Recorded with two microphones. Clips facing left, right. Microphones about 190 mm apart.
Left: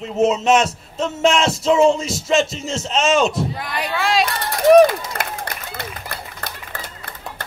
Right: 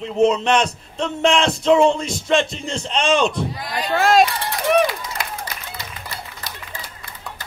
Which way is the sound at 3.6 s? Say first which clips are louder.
Even; 65° left (ahead or behind).